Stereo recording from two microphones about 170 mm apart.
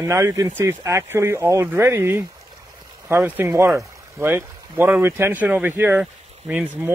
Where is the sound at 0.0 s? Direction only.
20° right (ahead or behind).